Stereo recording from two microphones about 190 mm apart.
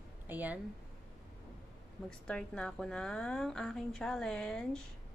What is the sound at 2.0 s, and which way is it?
A woman's voice, 5° left (ahead or behind).